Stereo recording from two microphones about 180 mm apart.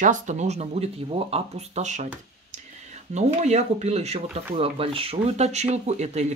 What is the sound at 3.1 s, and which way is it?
Speech, 40° right (ahead or behind).